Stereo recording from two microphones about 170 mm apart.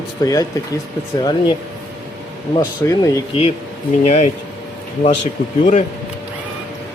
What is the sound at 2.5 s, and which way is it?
Speech, 30° left (ahead or behind).